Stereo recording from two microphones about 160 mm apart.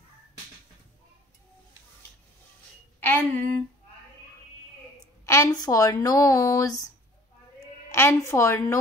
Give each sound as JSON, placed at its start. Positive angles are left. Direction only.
{"t": 3.0, "sound": "a sound", "side_deg": 10}
{"t": 5.2, "sound": "speech", "side_deg": 20}
{"t": 7.9, "sound": "a woman's voice", "side_deg": 15}